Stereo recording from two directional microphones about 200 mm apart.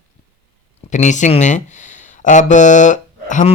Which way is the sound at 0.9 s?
35° left (ahead or behind).